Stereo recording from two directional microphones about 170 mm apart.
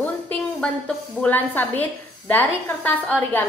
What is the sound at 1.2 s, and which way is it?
A woman's voice, 10° left (ahead or behind).